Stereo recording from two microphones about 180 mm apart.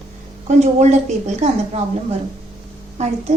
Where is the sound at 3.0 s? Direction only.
40° right (ahead or behind).